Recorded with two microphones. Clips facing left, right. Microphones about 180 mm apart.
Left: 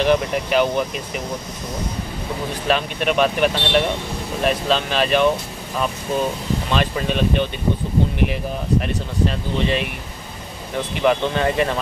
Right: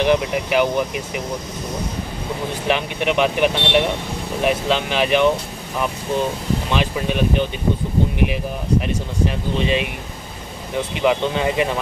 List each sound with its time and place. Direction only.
0.0 s speech: 10° right (ahead or behind)
2.7 s speech: 15° right (ahead or behind)
6.7 s speech: 15° right (ahead or behind)
9.3 s speech: 15° right (ahead or behind)
11.0 s speech: 15° right (ahead or behind)